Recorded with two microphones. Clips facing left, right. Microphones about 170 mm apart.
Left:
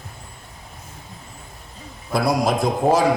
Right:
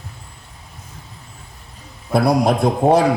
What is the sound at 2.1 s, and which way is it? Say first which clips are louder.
Speech: right 4 dB; 55° right (ahead or behind).